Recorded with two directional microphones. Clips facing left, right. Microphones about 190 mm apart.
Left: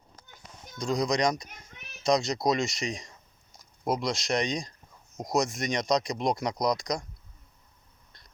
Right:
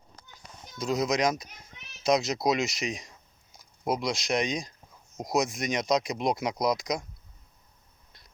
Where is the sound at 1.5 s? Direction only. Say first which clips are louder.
Left 2 dB; 55° left (ahead or behind).